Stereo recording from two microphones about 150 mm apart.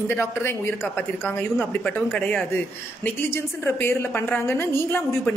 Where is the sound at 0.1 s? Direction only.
15° left (ahead or behind).